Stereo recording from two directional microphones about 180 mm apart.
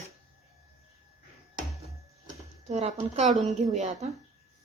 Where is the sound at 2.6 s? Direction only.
35° right (ahead or behind).